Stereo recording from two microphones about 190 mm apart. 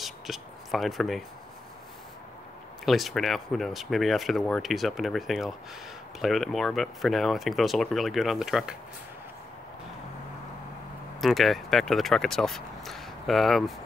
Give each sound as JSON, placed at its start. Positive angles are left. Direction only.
{"t": 0.0, "sound": "a sound", "side_deg": 0}
{"t": 2.8, "sound": "speech", "side_deg": 0}
{"t": 11.1, "sound": "speech", "side_deg": 0}